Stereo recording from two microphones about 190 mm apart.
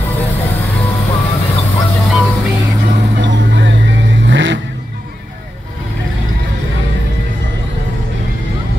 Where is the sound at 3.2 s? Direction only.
70° right (ahead or behind).